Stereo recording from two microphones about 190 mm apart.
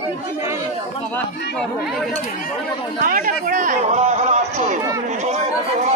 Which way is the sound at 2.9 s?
45° right (ahead or behind).